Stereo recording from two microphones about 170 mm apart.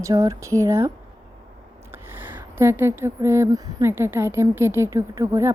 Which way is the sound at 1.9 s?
10° right (ahead or behind).